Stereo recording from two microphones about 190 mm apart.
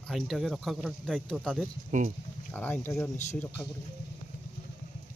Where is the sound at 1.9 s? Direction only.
40° right (ahead or behind).